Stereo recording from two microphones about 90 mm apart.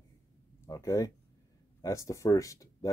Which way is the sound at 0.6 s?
40° left (ahead or behind).